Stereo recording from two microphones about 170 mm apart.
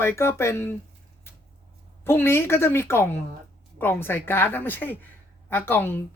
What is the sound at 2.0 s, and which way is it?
Speech, 15° left (ahead or behind).